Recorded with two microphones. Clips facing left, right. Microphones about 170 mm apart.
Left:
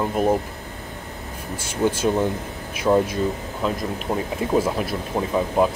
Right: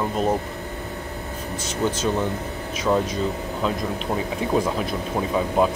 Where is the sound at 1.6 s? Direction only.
10° left (ahead or behind).